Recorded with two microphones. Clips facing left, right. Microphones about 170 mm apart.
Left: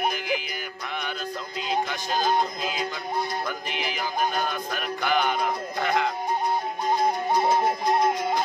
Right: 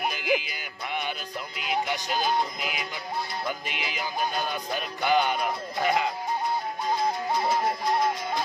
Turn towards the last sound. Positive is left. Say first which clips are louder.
# left 3 dB
turn(degrees=20)  # may be behind; listen again after turning